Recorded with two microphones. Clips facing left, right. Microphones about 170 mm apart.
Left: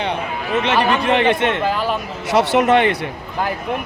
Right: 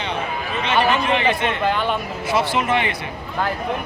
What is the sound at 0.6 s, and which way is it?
A man's voice, 75° left (ahead or behind).